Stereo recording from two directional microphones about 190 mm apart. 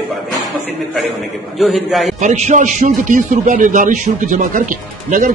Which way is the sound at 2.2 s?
40° right (ahead or behind).